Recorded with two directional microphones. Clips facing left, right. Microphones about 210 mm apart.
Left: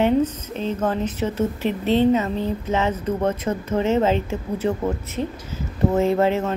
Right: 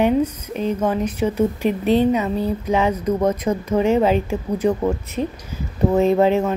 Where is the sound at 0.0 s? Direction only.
15° right (ahead or behind).